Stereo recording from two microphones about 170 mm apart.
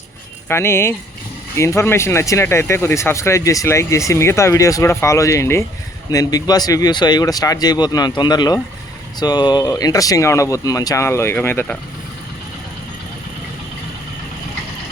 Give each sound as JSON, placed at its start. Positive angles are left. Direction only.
{"t": 0.4, "sound": "speech", "side_deg": 15}